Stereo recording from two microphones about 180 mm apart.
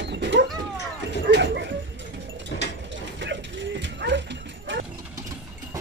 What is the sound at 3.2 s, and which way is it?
Mechanisms, 80° right.